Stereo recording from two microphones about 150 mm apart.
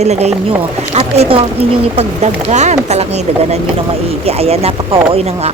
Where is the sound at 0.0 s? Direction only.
45° right (ahead or behind).